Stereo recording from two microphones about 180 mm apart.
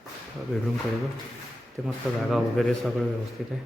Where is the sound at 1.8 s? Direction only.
5° left (ahead or behind).